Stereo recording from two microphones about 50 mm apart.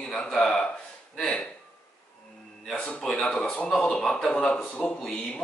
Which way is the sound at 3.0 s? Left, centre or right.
Centre.